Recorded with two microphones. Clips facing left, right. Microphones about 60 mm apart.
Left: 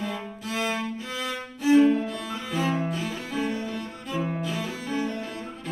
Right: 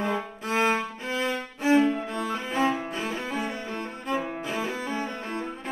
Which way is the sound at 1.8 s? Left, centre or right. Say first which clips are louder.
Left 3 dB; right.